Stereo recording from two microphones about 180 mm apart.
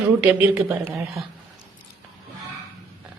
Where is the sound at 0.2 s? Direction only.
10° right (ahead or behind).